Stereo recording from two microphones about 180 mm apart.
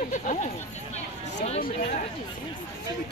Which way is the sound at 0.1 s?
45° left (ahead or behind).